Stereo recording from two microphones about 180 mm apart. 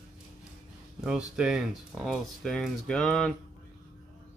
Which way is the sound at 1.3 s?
5° right (ahead or behind).